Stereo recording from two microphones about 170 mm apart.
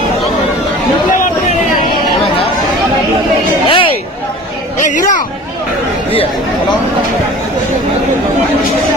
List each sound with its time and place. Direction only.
3.7 s chatter: 30° left (ahead or behind)
4.9 s speech: 50° left (ahead or behind)